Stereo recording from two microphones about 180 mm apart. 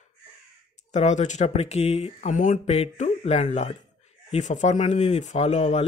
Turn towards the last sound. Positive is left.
turn(degrees=35)  # may be behind; listen again after turning